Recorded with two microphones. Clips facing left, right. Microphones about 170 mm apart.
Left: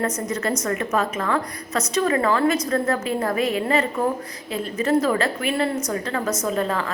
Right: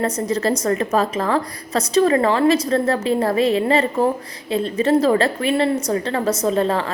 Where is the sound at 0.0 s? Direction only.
30° right (ahead or behind).